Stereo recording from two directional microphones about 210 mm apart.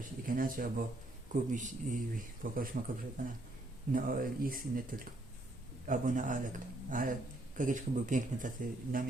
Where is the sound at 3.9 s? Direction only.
40° right (ahead or behind).